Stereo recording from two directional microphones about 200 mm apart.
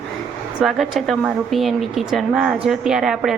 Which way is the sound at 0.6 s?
Centre (ahead or behind).